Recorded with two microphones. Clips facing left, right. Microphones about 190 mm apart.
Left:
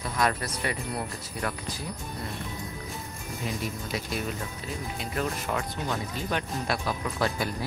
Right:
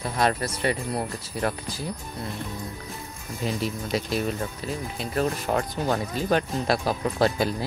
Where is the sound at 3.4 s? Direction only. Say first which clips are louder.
Right 6 dB; 30° right (ahead or behind).